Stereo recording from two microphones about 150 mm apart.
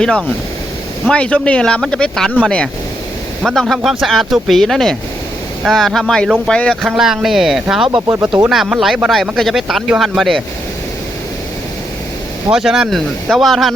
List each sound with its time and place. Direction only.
1.0 s speech: 5° left (ahead or behind)
7.9 s speech: 25° right (ahead or behind)
8.4 s speech: 5° right (ahead or behind)
12.5 s speech: 5° right (ahead or behind)